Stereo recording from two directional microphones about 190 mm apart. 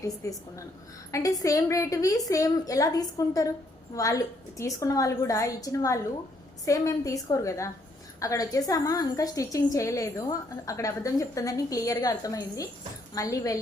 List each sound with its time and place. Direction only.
0.0 s a woman's voice: 15° left (ahead or behind)